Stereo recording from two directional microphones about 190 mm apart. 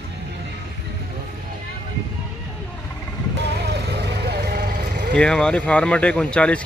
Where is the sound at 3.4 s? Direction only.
60° right (ahead or behind).